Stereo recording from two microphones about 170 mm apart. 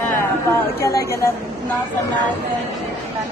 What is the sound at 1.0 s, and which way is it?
Speech, 15° left (ahead or behind).